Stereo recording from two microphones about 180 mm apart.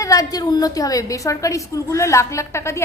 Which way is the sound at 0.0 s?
20° left (ahead or behind).